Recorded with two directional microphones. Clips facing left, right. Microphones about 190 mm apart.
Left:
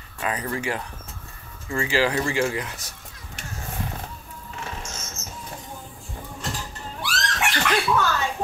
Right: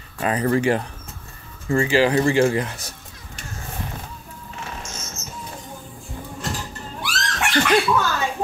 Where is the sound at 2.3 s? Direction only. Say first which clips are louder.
Right 6 dB; 30° right (ahead or behind).